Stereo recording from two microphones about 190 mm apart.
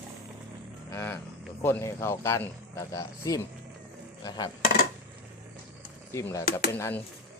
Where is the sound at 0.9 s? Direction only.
10° left (ahead or behind).